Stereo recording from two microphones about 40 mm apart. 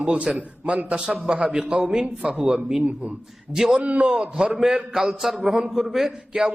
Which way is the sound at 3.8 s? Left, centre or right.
Right.